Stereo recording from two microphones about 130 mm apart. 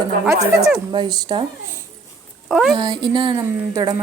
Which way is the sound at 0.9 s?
35° right (ahead or behind).